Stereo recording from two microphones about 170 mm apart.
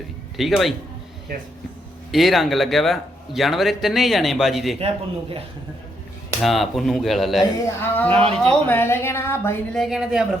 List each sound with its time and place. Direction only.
0.3 s speech: centre (ahead or behind)
2.1 s speech: centre (ahead or behind)
4.8 s speech: 35° right (ahead or behind)
6.4 s a woman's voice: centre (ahead or behind)
8.1 s speech: 35° right (ahead or behind)
8.4 s a woman's voice: 10° left (ahead or behind)
9.7 s speech: centre (ahead or behind)